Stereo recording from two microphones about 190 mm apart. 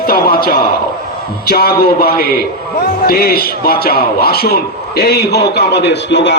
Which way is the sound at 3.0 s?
55° left (ahead or behind).